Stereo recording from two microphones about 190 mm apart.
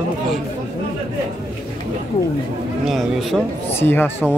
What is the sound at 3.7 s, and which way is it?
Speech, 10° left (ahead or behind).